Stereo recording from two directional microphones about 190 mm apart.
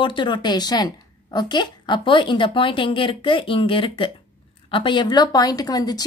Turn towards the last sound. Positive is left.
turn(degrees=20)  # may be behind; listen again after turning